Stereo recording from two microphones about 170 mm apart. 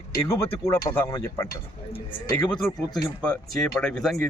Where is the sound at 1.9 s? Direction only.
35° left (ahead or behind).